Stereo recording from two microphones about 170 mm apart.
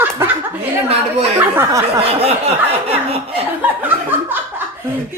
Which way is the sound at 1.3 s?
15° right (ahead or behind).